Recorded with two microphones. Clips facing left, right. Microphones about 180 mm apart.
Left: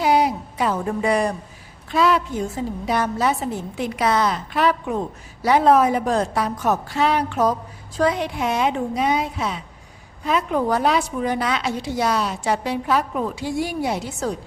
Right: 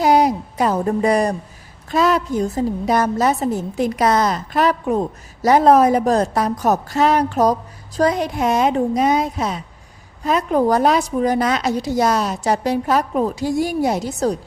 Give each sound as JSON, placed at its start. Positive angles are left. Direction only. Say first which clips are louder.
{"t": 0.0, "sound": "a woman's voice", "louder": "right 4 dB", "side_deg": -40}